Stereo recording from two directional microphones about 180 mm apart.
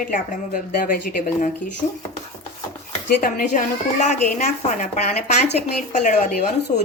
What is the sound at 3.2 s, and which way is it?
A woman's voice, 50° left (ahead or behind).